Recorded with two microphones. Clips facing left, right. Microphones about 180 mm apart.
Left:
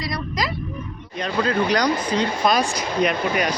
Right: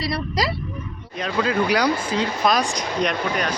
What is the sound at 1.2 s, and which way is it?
Speech, 5° right (ahead or behind).